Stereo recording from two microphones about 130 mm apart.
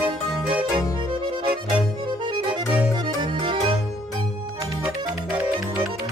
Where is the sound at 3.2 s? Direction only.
40° right (ahead or behind).